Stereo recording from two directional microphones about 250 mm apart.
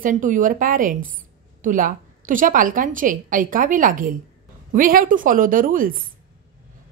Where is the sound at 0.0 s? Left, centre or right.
Right.